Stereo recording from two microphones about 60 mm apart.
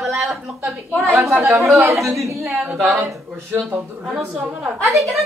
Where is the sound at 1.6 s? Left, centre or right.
Right.